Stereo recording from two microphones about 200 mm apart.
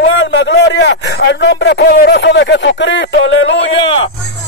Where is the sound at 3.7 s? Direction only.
25° left (ahead or behind).